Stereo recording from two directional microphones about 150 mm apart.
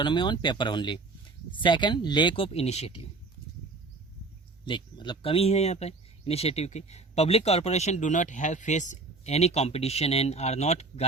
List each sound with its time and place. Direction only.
0.0 s speech: 30° left (ahead or behind)
4.6 s speech: 30° left (ahead or behind); by 11.0 s 45° left (ahead or behind)